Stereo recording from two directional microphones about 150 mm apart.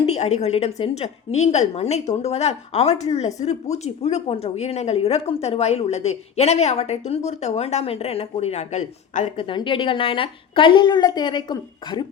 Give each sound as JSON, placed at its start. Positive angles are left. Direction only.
{"t": 0.0, "sound": "a woman's voice", "side_deg": 45}
{"t": 9.5, "sound": "a woman's voice", "side_deg": 35}